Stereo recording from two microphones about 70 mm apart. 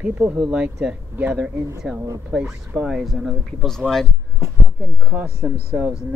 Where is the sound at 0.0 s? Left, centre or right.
Right.